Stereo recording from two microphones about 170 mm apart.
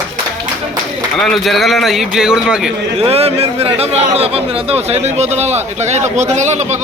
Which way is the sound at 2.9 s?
35° right (ahead or behind).